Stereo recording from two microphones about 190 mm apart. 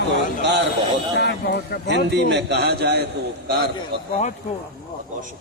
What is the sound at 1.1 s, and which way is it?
Music, 60° left (ahead or behind).